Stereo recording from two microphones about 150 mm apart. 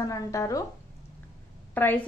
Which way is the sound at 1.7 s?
10° left (ahead or behind).